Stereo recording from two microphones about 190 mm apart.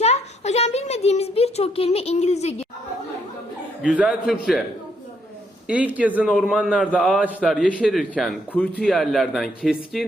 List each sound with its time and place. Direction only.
0.0 s a child's voice: 35° left (ahead or behind)
3.8 s a man's voice: 5° right (ahead or behind)
5.6 s a man's voice: 5° right (ahead or behind)